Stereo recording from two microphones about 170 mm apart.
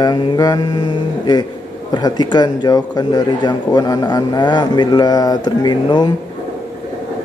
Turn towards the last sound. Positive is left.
turn(degrees=25)  # may be behind; listen again after turning